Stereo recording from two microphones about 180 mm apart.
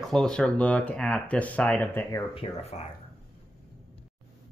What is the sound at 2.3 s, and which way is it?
Speech, 35° left (ahead or behind).